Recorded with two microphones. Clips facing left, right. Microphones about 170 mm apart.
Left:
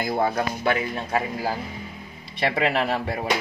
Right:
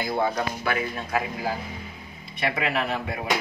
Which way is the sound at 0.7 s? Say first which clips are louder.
Left 3 dB; 30° left (ahead or behind).